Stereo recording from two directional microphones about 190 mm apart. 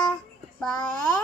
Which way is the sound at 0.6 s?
5° left (ahead or behind).